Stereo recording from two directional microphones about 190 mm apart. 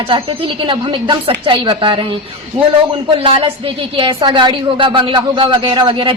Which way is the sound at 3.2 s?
30° right (ahead or behind).